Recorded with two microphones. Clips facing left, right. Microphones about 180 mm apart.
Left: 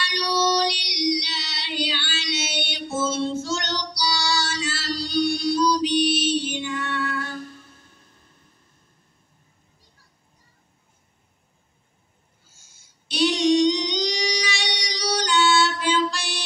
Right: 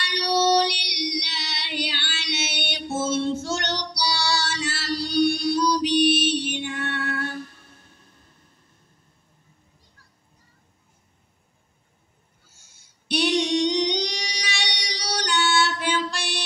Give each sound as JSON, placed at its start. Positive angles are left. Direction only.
{"t": 0.0, "sound": "child singing", "side_deg": -60}
{"t": 12.5, "sound": "singing", "side_deg": -60}
{"t": 14.8, "sound": "music", "side_deg": -60}